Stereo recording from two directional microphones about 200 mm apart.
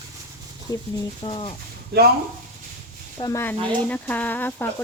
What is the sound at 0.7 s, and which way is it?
Speech, 15° left (ahead or behind).